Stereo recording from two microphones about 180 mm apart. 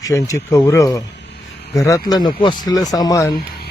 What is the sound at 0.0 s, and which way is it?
Speech, 15° left (ahead or behind).